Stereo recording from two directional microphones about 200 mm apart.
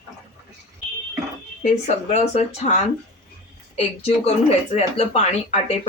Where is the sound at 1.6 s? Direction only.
35° left (ahead or behind).